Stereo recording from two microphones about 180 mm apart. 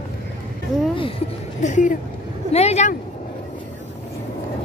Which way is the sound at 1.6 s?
45° left (ahead or behind).